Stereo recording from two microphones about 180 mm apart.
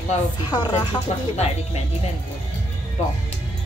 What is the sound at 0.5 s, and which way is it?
Speech, 25° left (ahead or behind).